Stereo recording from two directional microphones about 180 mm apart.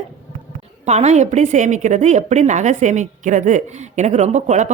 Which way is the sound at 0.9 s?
40° right (ahead or behind).